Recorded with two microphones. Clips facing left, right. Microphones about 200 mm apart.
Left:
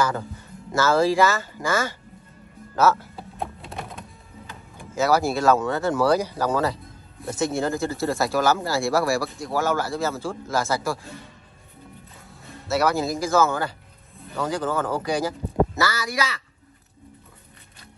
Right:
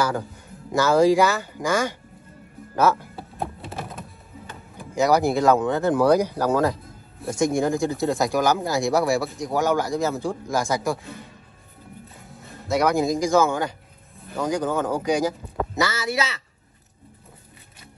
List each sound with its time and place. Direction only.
0.7 s speech: 15° right (ahead or behind)
3.3 s a sound: centre (ahead or behind)
4.9 s speech: 15° right (ahead or behind)
12.6 s speech: 15° right (ahead or behind)